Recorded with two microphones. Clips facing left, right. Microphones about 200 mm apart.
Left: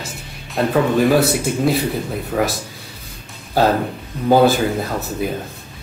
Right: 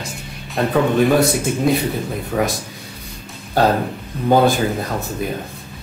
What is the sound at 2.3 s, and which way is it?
Speech, centre (ahead or behind).